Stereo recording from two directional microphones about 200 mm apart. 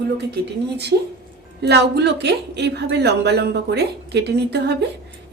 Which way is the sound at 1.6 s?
55° right (ahead or behind).